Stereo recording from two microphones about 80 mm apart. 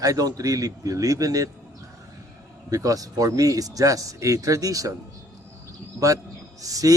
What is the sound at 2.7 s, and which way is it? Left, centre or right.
Speech, right.